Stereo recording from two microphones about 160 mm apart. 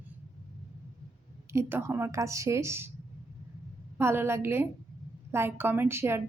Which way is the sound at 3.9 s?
15° right (ahead or behind).